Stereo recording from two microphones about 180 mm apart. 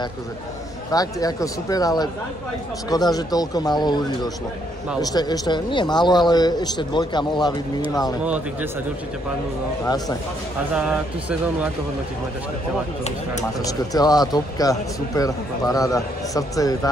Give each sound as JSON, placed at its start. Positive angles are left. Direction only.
{"t": 0.9, "sound": "a man's voice", "side_deg": 20}
{"t": 9.8, "sound": "a man's voice", "side_deg": 20}
{"t": 10.7, "sound": "speech", "side_deg": -5}
{"t": 13.6, "sound": "a man's voice", "side_deg": 20}